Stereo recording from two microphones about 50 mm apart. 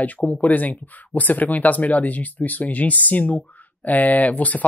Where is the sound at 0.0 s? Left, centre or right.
Left.